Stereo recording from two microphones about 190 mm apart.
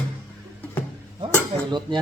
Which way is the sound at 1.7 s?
25° right (ahead or behind).